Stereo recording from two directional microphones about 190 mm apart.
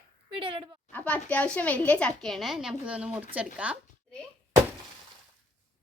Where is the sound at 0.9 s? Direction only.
10° left (ahead or behind); by 3.8 s 5° right (ahead or behind).